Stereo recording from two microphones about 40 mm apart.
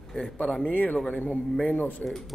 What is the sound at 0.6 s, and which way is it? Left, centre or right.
A man's voice, left.